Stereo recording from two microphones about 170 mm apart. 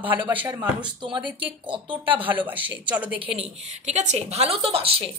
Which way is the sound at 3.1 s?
35° right (ahead or behind).